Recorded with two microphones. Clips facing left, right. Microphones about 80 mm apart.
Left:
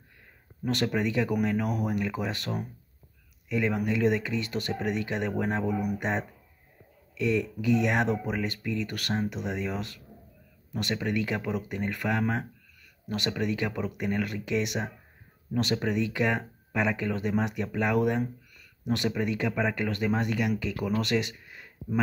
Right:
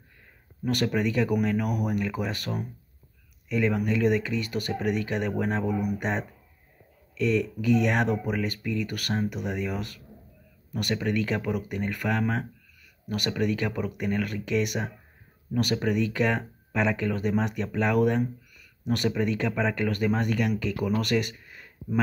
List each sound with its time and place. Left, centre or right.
0.7 s speech: left